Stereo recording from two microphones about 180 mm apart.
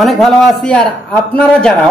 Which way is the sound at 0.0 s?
Centre (ahead or behind).